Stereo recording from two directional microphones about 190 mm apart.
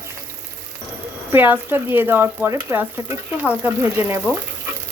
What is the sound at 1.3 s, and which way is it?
Speech, 10° right (ahead or behind).